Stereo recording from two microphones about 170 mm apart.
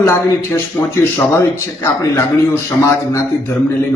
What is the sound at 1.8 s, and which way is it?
A man's voice, 15° left (ahead or behind).